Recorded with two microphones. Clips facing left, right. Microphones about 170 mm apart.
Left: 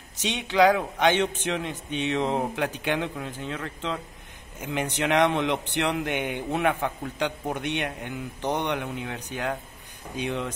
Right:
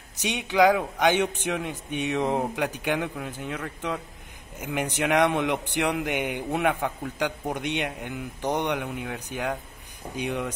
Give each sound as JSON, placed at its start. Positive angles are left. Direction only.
{"t": 0.2, "sound": "a man's voice", "side_deg": -10}